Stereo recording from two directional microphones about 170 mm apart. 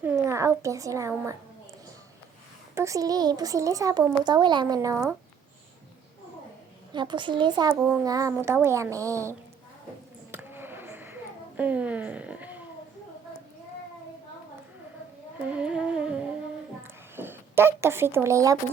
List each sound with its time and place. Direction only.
0.0 s a woman's voice: 15° right (ahead or behind)
2.7 s a child's voice: 20° right (ahead or behind)
6.9 s a child's voice: 25° right (ahead or behind)
10.3 s a sound: 10° right (ahead or behind)
15.4 s humming: 5° right (ahead or behind)
16.8 s a sound: 15° right (ahead or behind)